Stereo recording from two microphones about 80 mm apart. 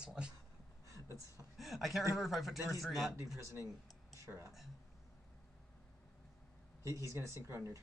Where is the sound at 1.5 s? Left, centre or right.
Centre.